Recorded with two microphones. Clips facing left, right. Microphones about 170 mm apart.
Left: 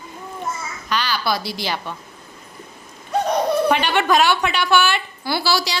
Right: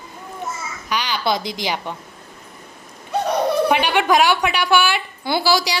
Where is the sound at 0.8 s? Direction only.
15° right (ahead or behind).